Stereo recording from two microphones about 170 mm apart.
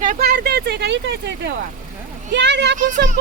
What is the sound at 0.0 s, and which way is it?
A child's voice, 55° right (ahead or behind).